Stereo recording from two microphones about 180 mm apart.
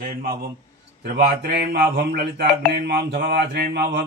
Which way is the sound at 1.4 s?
60° right (ahead or behind).